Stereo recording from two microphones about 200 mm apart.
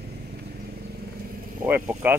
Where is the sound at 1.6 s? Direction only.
10° right (ahead or behind).